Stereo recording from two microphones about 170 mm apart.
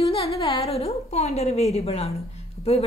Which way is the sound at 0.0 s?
35° left (ahead or behind).